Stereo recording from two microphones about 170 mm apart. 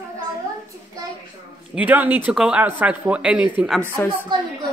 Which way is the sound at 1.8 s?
10° right (ahead or behind).